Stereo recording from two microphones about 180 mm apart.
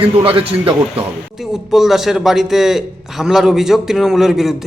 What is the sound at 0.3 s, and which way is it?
Speech, 30° right (ahead or behind).